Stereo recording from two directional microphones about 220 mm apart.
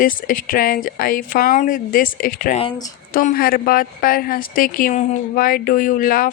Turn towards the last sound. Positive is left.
turn(degrees=40)  # may be behind; listen again after turning